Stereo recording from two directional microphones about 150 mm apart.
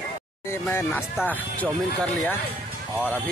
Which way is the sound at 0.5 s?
15° left (ahead or behind).